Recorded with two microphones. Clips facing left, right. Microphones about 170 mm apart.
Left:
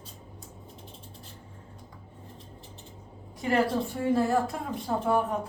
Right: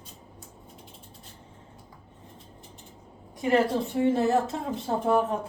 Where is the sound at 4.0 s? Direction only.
20° right (ahead or behind).